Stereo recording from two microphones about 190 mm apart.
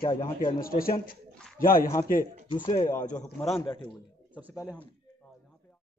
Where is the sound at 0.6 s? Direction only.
50° left (ahead or behind).